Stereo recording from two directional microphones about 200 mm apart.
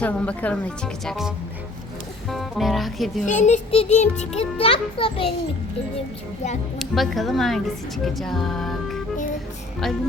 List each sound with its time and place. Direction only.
0.0 s speech: 5° left (ahead or behind)
2.3 s a woman's voice: centre (ahead or behind)
3.2 s a child's voice: 35° left (ahead or behind)
6.7 s a woman's voice: centre (ahead or behind)